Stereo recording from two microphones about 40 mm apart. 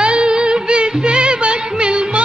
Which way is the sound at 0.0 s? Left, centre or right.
Right.